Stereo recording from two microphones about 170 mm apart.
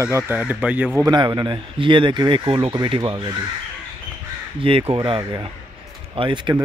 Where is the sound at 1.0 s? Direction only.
25° right (ahead or behind).